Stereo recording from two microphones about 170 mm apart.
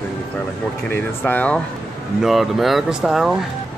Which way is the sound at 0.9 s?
10° left (ahead or behind).